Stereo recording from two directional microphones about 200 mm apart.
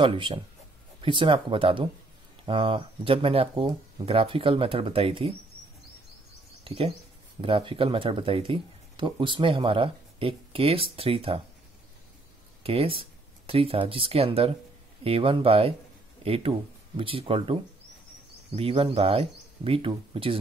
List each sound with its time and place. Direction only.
0.0 s speech: 25° right (ahead or behind)
6.6 s speech: 25° right (ahead or behind)
12.6 s speech: 25° right (ahead or behind)
18.6 s speech: 25° right (ahead or behind)